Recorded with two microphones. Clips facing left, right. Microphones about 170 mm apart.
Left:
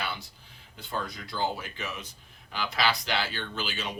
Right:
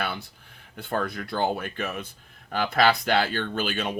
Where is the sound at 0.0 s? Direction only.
55° right (ahead or behind).